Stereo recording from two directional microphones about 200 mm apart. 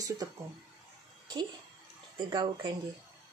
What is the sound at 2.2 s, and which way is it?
Speech, 25° right (ahead or behind).